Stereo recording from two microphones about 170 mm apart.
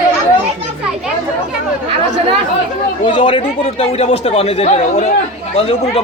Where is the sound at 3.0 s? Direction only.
30° left (ahead or behind).